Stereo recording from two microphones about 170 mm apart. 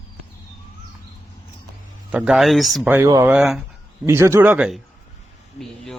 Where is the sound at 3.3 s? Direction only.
Centre (ahead or behind).